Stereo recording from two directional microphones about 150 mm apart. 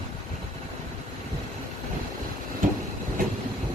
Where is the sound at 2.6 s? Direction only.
60° right (ahead or behind).